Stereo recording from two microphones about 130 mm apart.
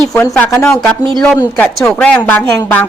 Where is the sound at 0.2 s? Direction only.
20° left (ahead or behind).